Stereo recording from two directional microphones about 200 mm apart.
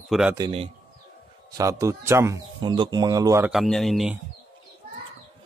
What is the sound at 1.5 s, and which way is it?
Speech, 15° right (ahead or behind).